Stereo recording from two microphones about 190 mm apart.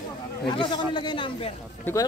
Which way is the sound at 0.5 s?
25° left (ahead or behind).